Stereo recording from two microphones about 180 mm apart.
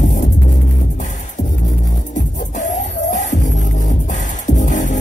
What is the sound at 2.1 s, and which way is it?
Music, 45° left (ahead or behind).